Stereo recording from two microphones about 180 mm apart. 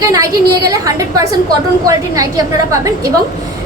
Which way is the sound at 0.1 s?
20° right (ahead or behind).